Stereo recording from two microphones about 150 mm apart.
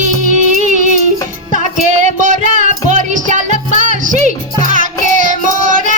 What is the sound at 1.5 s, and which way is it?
Music, 55° right (ahead or behind).